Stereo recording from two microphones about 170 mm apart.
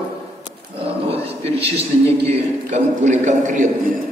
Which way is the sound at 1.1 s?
35° right (ahead or behind).